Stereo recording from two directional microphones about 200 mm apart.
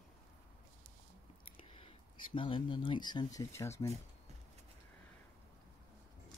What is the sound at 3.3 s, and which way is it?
Speech, 15° left (ahead or behind).